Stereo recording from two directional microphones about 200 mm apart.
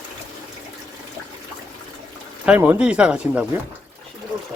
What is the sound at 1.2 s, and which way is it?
Water, 15° left (ahead or behind).